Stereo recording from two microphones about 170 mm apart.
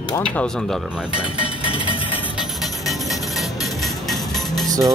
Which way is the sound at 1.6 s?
30° left (ahead or behind).